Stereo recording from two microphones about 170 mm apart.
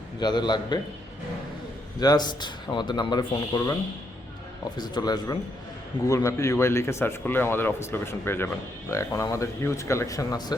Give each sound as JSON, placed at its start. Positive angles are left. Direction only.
{"t": 0.2, "sound": "speech", "side_deg": 25}
{"t": 2.0, "sound": "speech", "side_deg": 25}
{"t": 4.8, "sound": "speech", "side_deg": 25}